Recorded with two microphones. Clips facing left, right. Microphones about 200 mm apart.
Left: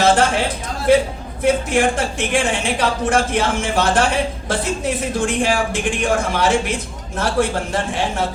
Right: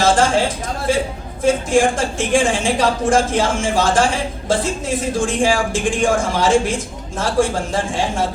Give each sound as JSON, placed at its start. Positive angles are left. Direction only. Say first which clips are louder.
{"t": 0.0, "sound": "a man's voice", "louder": "right 1 dB", "side_deg": 60}